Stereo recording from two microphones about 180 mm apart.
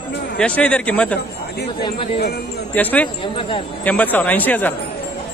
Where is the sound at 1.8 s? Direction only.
25° left (ahead or behind).